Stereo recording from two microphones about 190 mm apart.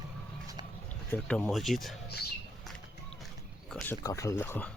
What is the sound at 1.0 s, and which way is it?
Speech, 5° left (ahead or behind).